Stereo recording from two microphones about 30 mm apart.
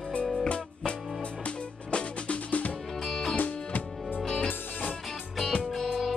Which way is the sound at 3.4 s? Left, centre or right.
Left.